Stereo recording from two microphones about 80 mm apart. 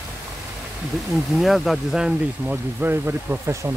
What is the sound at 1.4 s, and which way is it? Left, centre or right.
Speech, centre.